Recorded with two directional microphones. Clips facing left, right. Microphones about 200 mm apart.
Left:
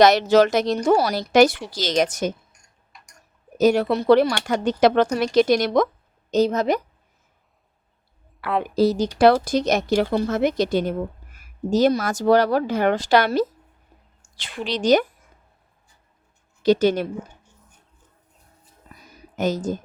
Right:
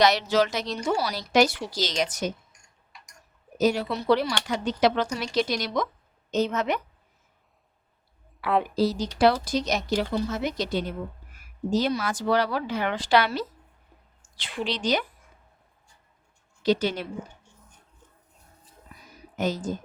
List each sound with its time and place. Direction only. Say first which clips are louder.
0.0 s speech: left 7 dB; 50° left (ahead or behind)
1.5 s speech: even; centre (ahead or behind)
1.8 s speech: left 6 dB; 50° left (ahead or behind)
3.6 s speech: left 6 dB; 55° left (ahead or behind)
6.3 s a woman's voice: left 6 dB; 35° left (ahead or behind)
8.4 s a woman's voice: even; centre (ahead or behind)
8.7 s speech: left 6 dB; 50° left (ahead or behind)
14.2 s a sound: left 1 dB; 45° left (ahead or behind)
14.6 s speech: left 8 dB; 45° left (ahead or behind)
16.6 s speech: left 7 dB; 45° left (ahead or behind)
19.4 s speech: left 4 dB; 45° left (ahead or behind)